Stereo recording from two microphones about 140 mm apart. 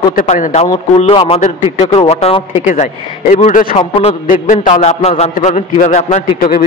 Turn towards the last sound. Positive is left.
turn(degrees=55)  # may be behind; listen again after turning